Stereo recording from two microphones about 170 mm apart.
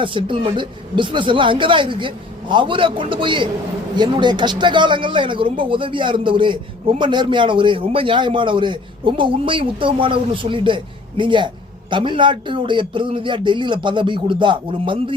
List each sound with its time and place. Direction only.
0.0 s a man's voice: 30° right (ahead or behind)